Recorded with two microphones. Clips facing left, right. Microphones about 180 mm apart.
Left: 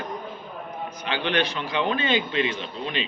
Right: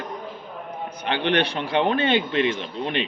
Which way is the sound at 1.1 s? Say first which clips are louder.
Right 3 dB; 60° right (ahead or behind).